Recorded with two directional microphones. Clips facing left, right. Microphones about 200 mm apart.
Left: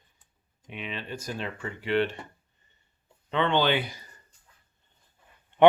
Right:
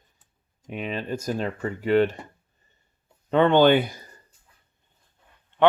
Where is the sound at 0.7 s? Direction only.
45° right (ahead or behind).